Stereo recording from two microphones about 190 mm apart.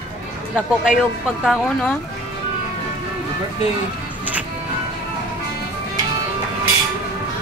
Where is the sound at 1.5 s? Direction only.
5° left (ahead or behind).